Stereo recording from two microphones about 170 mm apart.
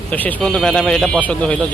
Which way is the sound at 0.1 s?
10° left (ahead or behind).